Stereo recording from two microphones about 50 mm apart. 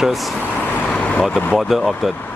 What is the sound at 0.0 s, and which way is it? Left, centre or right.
Speech, centre.